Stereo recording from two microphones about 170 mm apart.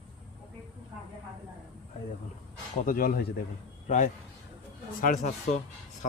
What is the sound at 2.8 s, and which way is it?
Speech, 55° left (ahead or behind).